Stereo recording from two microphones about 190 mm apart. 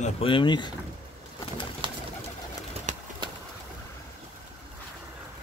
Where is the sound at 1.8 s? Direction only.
25° right (ahead or behind).